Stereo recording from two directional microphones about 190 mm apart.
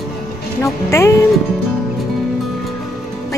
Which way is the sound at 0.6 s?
15° left (ahead or behind).